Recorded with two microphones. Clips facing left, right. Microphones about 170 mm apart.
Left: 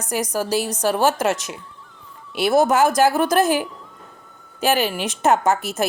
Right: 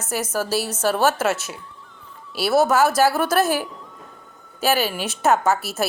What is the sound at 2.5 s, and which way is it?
Speech, 15° left (ahead or behind).